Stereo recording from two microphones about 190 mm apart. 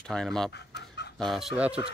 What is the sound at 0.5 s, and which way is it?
Chicken, 65° left (ahead or behind).